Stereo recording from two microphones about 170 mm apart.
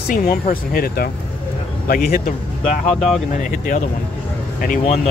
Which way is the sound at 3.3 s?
50° left (ahead or behind).